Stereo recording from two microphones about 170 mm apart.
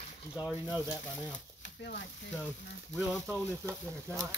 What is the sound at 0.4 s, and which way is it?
Speech, 5° right (ahead or behind).